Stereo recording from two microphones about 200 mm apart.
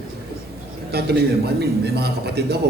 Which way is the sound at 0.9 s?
55° right (ahead or behind).